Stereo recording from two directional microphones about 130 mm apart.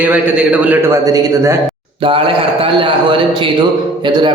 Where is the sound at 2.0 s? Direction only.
40° right (ahead or behind).